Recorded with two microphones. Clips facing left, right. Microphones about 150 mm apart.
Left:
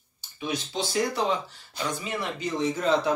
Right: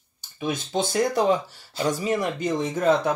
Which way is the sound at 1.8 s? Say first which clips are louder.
Right 7 dB; 40° right (ahead or behind).